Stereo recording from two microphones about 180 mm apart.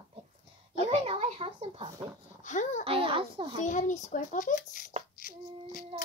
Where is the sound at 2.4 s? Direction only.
40° left (ahead or behind).